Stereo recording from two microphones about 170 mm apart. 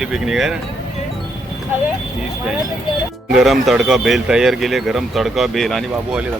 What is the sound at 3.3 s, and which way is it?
Speech, centre (ahead or behind).